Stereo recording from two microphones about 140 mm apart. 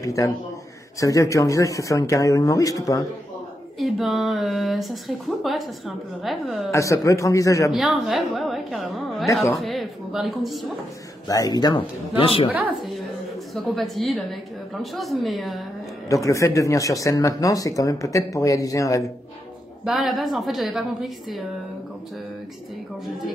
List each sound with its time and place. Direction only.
0.0 s a man's voice: 25° left (ahead or behind)
3.8 s speech: centre (ahead or behind)
6.7 s speech: 20° left (ahead or behind)
7.7 s speech: centre (ahead or behind)
9.3 s speech: 20° left (ahead or behind)
9.6 s a woman's voice: centre (ahead or behind)
11.2 s speech: 25° left (ahead or behind)
13.6 s speech: centre (ahead or behind)
16.1 s speech: 20° left (ahead or behind)
19.8 s speech: centre (ahead or behind)